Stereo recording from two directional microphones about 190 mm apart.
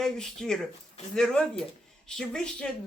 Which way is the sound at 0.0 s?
5° left (ahead or behind).